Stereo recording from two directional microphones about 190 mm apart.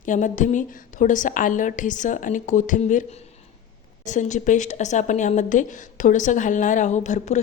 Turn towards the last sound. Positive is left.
turn(degrees=40)  # may be behind; listen again after turning